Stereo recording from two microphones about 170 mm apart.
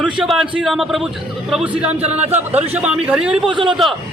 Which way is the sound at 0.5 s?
Centre (ahead or behind).